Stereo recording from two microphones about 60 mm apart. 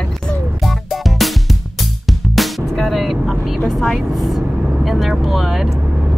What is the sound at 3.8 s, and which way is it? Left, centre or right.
Speech, centre.